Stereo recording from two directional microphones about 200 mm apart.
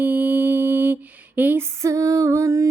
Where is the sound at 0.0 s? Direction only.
10° right (ahead or behind).